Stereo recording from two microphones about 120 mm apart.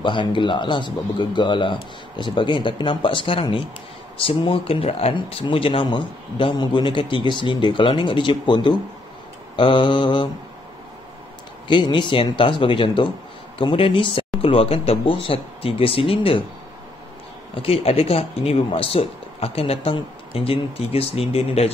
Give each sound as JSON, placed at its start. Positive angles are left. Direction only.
{"t": 0.0, "sound": "speech", "side_deg": 40}
{"t": 11.6, "sound": "speech", "side_deg": 40}
{"t": 17.6, "sound": "speech", "side_deg": 55}